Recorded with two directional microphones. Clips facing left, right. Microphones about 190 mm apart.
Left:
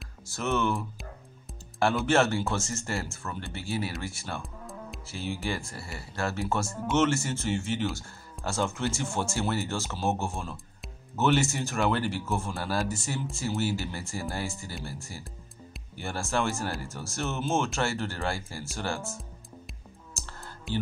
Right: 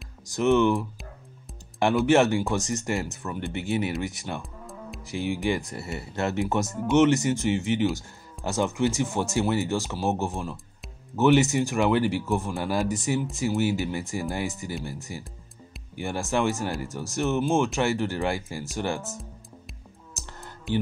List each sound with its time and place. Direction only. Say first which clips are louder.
0.3 s speech: right 8 dB; 15° right (ahead or behind)
2.0 s speech: right 6 dB; 15° right (ahead or behind)
4.4 s music: right 1 dB; centre (ahead or behind)
5.0 s speech: right 7 dB; 15° right (ahead or behind)
20.2 s music: right 1 dB; 20° right (ahead or behind)